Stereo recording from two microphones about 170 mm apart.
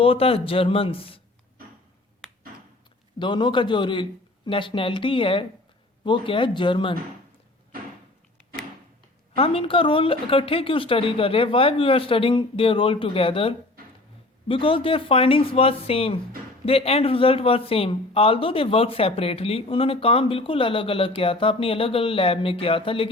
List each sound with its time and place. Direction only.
0.0 s speech: 35° left (ahead or behind)
3.2 s speech: 25° left (ahead or behind)
9.3 s speech: 35° left (ahead or behind)